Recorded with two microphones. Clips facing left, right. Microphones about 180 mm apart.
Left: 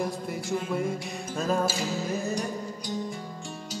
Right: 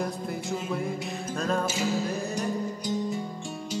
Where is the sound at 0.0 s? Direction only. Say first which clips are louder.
Even; centre (ahead or behind).